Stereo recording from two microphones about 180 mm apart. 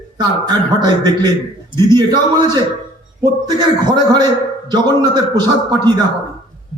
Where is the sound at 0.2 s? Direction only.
25° right (ahead or behind).